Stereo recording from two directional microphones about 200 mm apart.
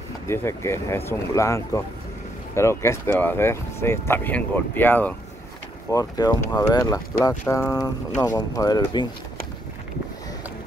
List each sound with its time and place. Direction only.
0.3 s speech: 15° left (ahead or behind)